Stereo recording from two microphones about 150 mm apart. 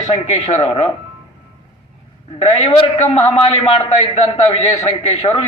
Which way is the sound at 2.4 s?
40° left (ahead or behind).